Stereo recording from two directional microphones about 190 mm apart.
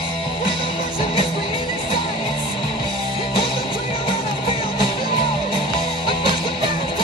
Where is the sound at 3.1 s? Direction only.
30° left (ahead or behind).